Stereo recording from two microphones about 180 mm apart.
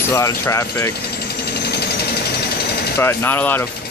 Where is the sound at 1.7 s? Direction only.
65° left (ahead or behind).